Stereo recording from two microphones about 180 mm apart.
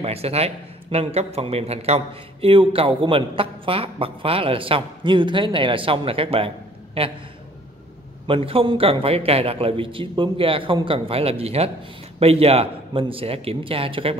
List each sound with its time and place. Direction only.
0.0 s a man's voice: 35° right (ahead or behind)
8.3 s a man's voice: 30° right (ahead or behind)